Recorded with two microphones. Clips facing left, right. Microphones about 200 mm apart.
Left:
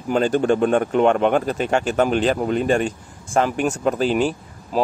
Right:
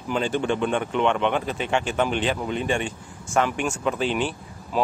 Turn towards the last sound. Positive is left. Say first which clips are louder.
# left 3 dB
turn(degrees=40)  # may be behind; listen again after turning